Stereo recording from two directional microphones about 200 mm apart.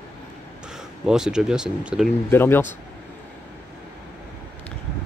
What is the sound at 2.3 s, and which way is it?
Speech, 10° left (ahead or behind).